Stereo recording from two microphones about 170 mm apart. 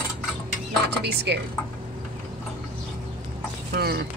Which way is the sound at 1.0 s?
75° right (ahead or behind).